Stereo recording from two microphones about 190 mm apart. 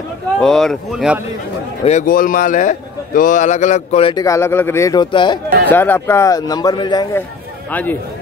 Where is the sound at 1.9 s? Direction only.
45° left (ahead or behind); by 5.4 s 25° left (ahead or behind).